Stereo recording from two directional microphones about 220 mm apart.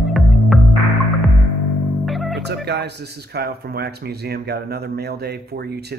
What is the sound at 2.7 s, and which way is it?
Speech, 50° right (ahead or behind).